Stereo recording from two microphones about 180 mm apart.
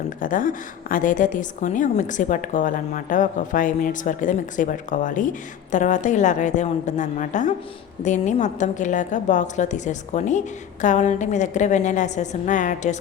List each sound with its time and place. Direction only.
0.2 s a woman's voice: 50° left (ahead or behind)